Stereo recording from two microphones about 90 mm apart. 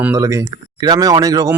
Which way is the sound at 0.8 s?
45° right (ahead or behind).